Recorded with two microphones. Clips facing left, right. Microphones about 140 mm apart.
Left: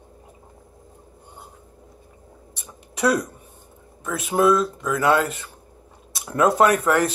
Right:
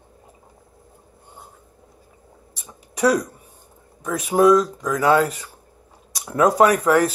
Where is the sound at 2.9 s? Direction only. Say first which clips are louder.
Right 2 dB; 10° right (ahead or behind).